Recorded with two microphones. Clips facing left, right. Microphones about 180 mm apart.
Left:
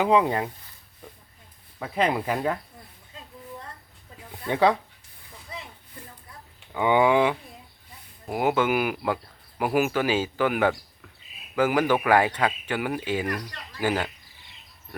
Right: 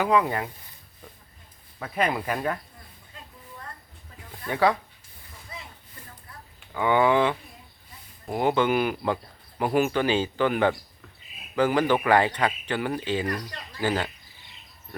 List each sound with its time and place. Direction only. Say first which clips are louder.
0.0 s speech: left 2 dB; 25° left (ahead or behind)
1.8 s speech: left 2 dB; 15° left (ahead or behind)
4.4 s speech: left 2 dB; 20° left (ahead or behind)
6.7 s speech: left 1 dB; 15° left (ahead or behind)